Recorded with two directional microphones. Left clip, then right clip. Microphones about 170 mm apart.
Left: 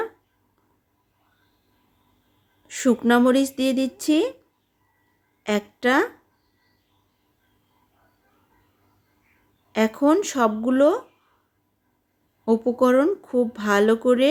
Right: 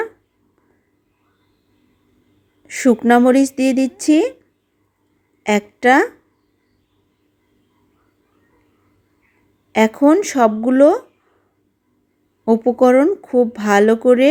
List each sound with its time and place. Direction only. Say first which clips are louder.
2.6 s speech: right 7 dB; 25° right (ahead or behind)
5.4 s a woman's voice: right 7 dB; 25° right (ahead or behind)
9.7 s speech: right 7 dB; 25° right (ahead or behind)
12.5 s speech: right 6 dB; 25° right (ahead or behind)